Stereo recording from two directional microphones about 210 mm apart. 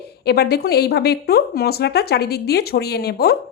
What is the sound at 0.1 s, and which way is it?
Speech, 50° left (ahead or behind).